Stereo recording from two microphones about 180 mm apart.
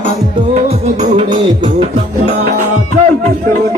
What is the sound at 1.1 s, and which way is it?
Music, 35° right (ahead or behind).